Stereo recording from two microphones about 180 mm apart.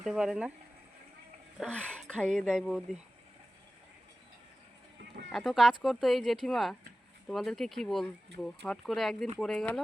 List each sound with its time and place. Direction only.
0.0 s speech: 5° right (ahead or behind)
1.5 s speech: 5° left (ahead or behind)
5.3 s speech: centre (ahead or behind)